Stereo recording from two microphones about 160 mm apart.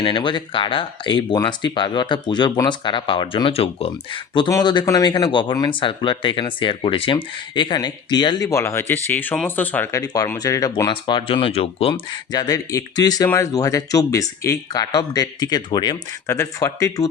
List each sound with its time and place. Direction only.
0.0 s speech: 30° left (ahead or behind)